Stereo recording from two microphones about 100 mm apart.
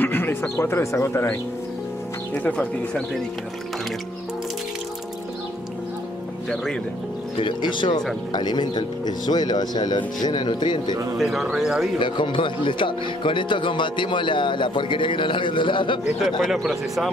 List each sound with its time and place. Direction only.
0.0 s speech: 20° left (ahead or behind)
2.4 s speech: 15° left (ahead or behind)
6.5 s speech: 5° left (ahead or behind)
7.3 s speech: 55° left (ahead or behind)
11.1 s speech: centre (ahead or behind)
12.0 s speech: 55° left (ahead or behind)
16.2 s speech: 5° left (ahead or behind)